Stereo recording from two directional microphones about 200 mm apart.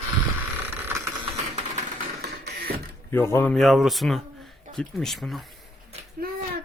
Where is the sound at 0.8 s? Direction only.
15° right (ahead or behind).